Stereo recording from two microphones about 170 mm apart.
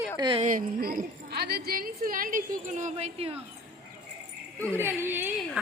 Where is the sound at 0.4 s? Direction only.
55° right (ahead or behind); by 3.4 s 35° right (ahead or behind).